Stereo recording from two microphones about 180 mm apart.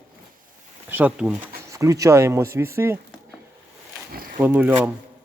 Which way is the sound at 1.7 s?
15° right (ahead or behind).